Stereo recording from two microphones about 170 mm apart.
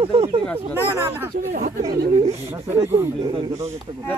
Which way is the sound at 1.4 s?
50° right (ahead or behind).